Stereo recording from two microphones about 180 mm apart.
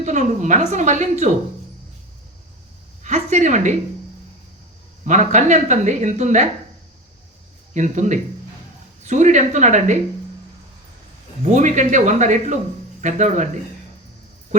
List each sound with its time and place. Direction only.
0.0 s speech: 40° right (ahead or behind)
3.0 s a woman's voice: 40° right (ahead or behind)
5.0 s speech: 40° right (ahead or behind)
7.7 s speech: 40° right (ahead or behind)
11.4 s speech: 40° right (ahead or behind)